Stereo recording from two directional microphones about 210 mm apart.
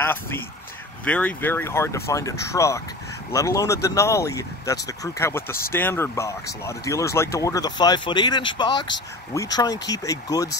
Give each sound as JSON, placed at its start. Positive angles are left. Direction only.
{"t": 0.0, "sound": "speech", "side_deg": 10}